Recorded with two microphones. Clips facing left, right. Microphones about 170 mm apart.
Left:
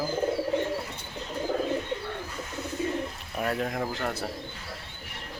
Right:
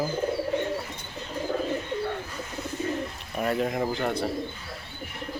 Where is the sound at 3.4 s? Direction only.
Centre (ahead or behind).